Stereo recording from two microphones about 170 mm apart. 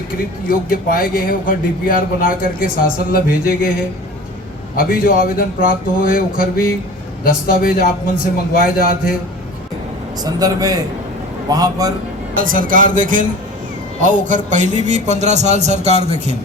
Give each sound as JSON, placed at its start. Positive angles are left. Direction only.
{"t": 0.4, "sound": "a man's voice", "side_deg": 55}
{"t": 4.8, "sound": "a man's voice", "side_deg": 55}
{"t": 10.2, "sound": "a man's voice", "side_deg": -20}
{"t": 12.4, "sound": "a man's voice", "side_deg": -55}